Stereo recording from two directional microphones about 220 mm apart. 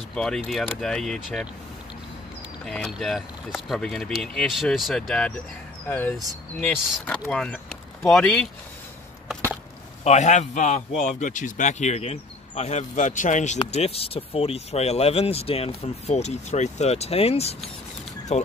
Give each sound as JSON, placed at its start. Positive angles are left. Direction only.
{"t": 0.1, "sound": "speech", "side_deg": 5}
{"t": 2.6, "sound": "speech", "side_deg": 0}
{"t": 10.0, "sound": "a man's voice", "side_deg": 30}